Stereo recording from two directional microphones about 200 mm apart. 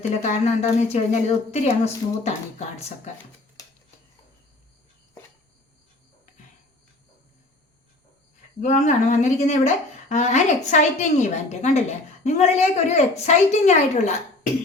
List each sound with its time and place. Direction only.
0.1 s a woman's voice: 35° left (ahead or behind)
8.6 s a woman's voice: 35° left (ahead or behind)